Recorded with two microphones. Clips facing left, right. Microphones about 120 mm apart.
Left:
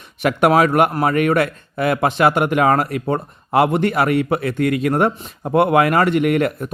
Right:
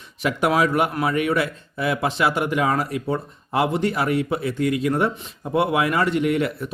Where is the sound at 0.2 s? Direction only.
60° left (ahead or behind).